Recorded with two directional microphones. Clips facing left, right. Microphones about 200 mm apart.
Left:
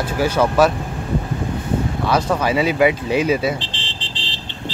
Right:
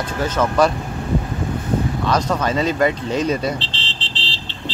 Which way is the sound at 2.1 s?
10° left (ahead or behind).